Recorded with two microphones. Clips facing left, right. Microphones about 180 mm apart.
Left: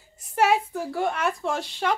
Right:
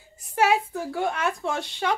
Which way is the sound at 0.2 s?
Centre (ahead or behind).